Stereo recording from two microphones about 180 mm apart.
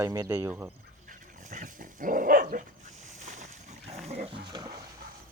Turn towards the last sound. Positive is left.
turn(degrees=-35)  # may be behind; listen again after turning